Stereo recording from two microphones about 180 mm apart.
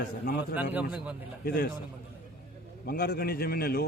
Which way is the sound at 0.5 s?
10° right (ahead or behind).